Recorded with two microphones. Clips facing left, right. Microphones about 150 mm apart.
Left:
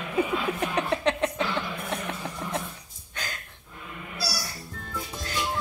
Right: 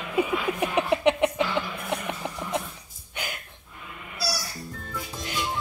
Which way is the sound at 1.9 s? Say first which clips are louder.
Right 2 dB; 15° right (ahead or behind).